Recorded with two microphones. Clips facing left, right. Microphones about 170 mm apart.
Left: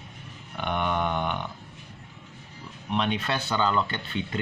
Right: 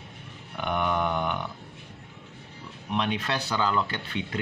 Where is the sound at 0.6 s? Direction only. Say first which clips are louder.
Even; 5° right (ahead or behind).